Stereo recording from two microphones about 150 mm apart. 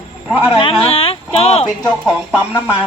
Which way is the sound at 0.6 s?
40° left (ahead or behind).